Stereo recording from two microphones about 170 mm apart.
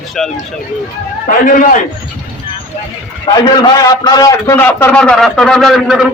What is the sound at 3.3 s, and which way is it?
A man's voice, 25° left (ahead or behind).